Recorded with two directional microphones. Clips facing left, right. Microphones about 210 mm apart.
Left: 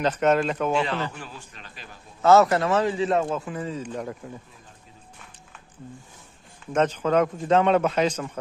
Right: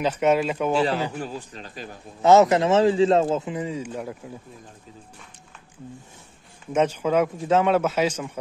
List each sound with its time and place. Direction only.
0.0 s speech: 10° right (ahead or behind)
1.1 s speech: 40° right (ahead or behind)
2.2 s a man's voice: 20° right (ahead or behind)
6.7 s speech: 10° right (ahead or behind)